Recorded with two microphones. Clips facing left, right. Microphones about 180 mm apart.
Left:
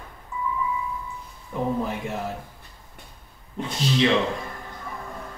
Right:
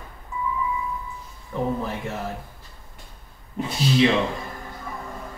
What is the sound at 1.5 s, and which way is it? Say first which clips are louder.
Speech: right 1 dB; 15° left (ahead or behind).